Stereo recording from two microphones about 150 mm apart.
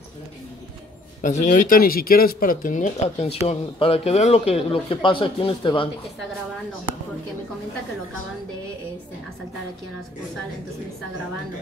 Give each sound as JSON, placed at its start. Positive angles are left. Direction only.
{"t": 1.2, "sound": "speech", "side_deg": 60}